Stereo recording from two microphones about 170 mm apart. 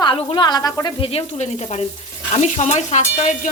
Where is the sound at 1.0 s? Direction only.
35° left (ahead or behind).